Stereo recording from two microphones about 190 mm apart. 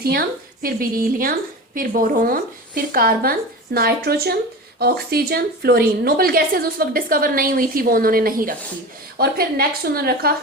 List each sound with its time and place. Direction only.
0.0 s speech: 55° right (ahead or behind)